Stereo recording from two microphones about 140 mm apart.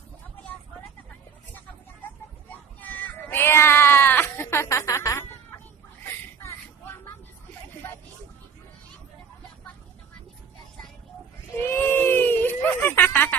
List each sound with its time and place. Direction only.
2.8 s sheep: 10° left (ahead or behind)
6.4 s vehicle: 20° left (ahead or behind)
11.6 s a sound: 15° left (ahead or behind)